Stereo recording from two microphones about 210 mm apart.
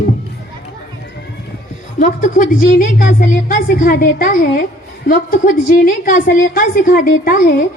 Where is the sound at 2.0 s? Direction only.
40° left (ahead or behind).